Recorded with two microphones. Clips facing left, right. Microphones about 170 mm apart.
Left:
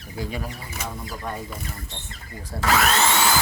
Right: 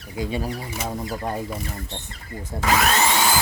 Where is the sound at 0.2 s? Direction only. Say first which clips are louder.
Right 5 dB; 25° right (ahead or behind).